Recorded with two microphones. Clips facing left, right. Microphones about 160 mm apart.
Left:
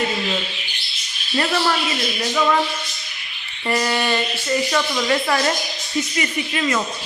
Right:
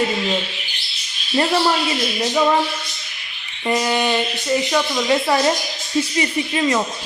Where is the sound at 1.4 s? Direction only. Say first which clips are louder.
Right 3 dB; 20° right (ahead or behind).